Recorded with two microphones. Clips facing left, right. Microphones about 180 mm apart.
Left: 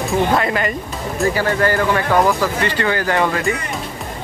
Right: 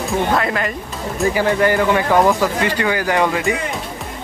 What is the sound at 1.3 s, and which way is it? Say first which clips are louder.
Speech: right 4 dB; 15° right (ahead or behind).